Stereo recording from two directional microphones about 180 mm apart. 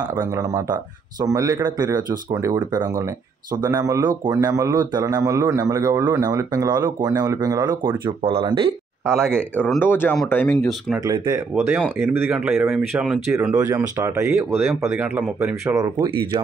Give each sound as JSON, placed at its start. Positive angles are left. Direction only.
{"t": 1.2, "sound": "a man's voice", "side_deg": -20}
{"t": 8.2, "sound": "speech", "side_deg": -30}
{"t": 9.2, "sound": "speech", "side_deg": 5}
{"t": 11.1, "sound": "a man's voice", "side_deg": -15}
{"t": 13.5, "sound": "a man's voice", "side_deg": -15}